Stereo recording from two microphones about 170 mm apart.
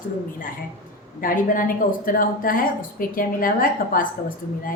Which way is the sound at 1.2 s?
55° left (ahead or behind).